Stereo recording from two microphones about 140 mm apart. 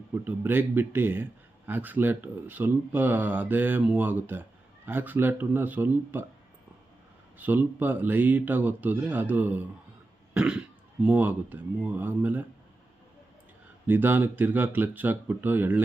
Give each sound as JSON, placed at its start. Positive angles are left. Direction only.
{"t": 0.1, "sound": "a man's voice", "side_deg": -15}
{"t": 7.3, "sound": "a man's voice", "side_deg": -15}
{"t": 10.3, "sound": "cough", "side_deg": -5}
{"t": 11.0, "sound": "a man's voice", "side_deg": -10}
{"t": 13.8, "sound": "a man's voice", "side_deg": -15}